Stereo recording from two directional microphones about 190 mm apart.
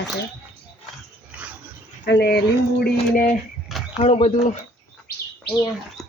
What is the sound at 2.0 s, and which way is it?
Speech, 65° left (ahead or behind).